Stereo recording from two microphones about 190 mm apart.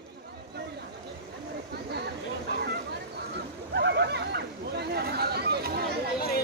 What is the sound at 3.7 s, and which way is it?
Hubbub, 60° right (ahead or behind).